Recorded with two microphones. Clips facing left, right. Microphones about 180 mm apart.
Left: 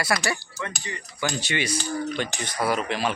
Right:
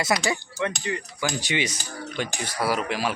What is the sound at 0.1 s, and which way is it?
Cutlery, 15° right (ahead or behind).